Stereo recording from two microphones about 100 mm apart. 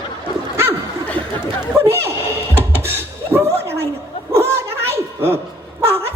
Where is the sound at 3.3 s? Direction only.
25° right (ahead or behind).